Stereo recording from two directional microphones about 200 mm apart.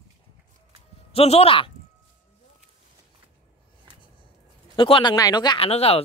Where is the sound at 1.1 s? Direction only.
30° left (ahead or behind).